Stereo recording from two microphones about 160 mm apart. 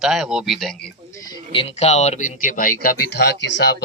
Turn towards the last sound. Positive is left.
turn(degrees=90)